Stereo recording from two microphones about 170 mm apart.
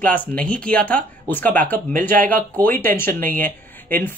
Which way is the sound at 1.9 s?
55° right (ahead or behind).